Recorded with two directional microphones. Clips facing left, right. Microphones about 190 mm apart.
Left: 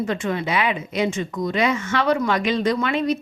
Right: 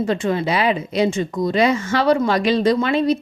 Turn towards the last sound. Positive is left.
turn(degrees=-30)  # may be behind; listen again after turning